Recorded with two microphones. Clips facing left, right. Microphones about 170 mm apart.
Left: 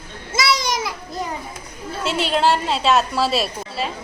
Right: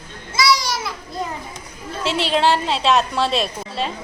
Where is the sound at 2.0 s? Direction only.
Centre (ahead or behind).